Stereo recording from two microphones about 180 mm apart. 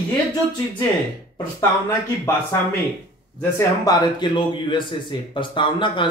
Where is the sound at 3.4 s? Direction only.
20° left (ahead or behind).